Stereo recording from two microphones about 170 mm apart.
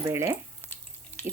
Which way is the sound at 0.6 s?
10° left (ahead or behind).